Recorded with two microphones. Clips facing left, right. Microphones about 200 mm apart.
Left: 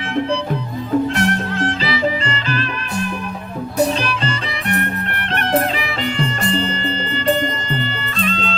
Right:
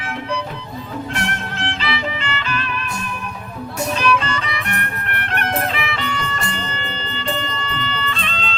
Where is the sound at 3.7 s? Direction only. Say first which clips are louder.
Left 1 dB; 35° left (ahead or behind).